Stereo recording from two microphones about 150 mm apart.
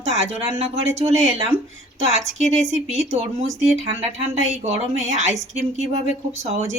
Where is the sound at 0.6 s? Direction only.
45° right (ahead or behind).